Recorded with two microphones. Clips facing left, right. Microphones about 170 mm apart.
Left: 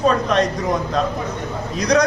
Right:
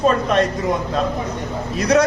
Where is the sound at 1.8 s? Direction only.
5° right (ahead or behind).